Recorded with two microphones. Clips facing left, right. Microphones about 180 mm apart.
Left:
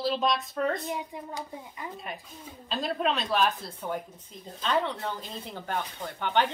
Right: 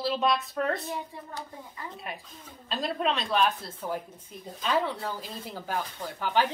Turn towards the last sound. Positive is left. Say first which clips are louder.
# even
turn(degrees=-5)  # may be behind; listen again after turning